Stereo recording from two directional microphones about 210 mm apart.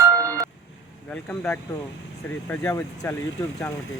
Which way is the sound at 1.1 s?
10° left (ahead or behind).